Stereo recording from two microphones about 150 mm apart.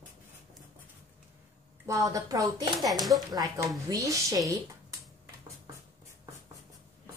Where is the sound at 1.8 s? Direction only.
20° right (ahead or behind).